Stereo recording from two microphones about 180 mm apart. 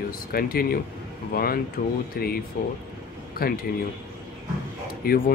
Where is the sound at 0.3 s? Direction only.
55° left (ahead or behind).